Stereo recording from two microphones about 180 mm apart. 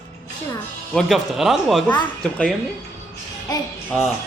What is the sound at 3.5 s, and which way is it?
Speech, 20° left (ahead or behind).